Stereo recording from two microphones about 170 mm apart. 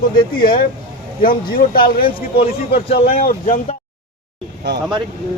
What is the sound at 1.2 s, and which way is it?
Speech, 55° left (ahead or behind).